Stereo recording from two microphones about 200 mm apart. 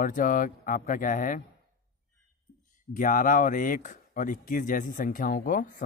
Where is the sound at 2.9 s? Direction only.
40° left (ahead or behind).